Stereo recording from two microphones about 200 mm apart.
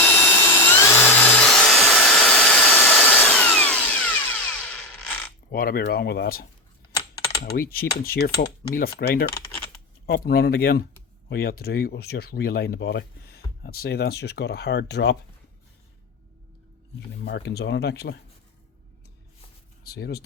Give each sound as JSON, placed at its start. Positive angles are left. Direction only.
{"t": 0.0, "sound": "tools", "side_deg": 10}
{"t": 5.5, "sound": "speech", "side_deg": 45}
{"t": 17.2, "sound": "speech", "side_deg": 60}
{"t": 19.8, "sound": "speech", "side_deg": 55}